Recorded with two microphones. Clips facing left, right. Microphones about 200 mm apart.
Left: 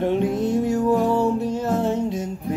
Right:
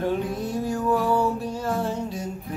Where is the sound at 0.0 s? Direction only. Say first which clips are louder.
Left 5 dB; 25° left (ahead or behind).